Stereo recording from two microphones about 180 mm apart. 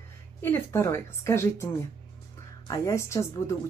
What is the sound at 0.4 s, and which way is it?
Speech, 15° left (ahead or behind).